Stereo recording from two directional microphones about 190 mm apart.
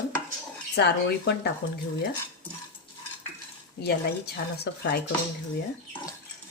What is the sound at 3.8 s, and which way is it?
Speech, 55° left (ahead or behind).